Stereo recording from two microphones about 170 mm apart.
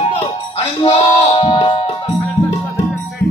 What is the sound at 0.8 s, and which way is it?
Music, 35° left (ahead or behind).